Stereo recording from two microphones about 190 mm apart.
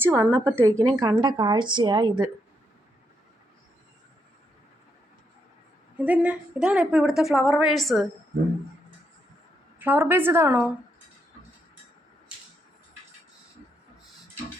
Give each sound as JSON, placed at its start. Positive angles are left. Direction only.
{"t": 0.0, "sound": "a woman's voice", "side_deg": -15}
{"t": 6.0, "sound": "a woman's voice", "side_deg": -5}
{"t": 9.7, "sound": "a woman's voice", "side_deg": -10}